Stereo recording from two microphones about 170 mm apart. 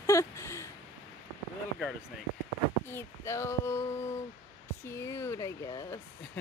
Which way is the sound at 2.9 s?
15° left (ahead or behind).